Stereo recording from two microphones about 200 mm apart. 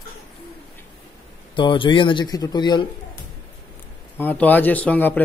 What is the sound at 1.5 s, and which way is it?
Speech, 25° left (ahead or behind).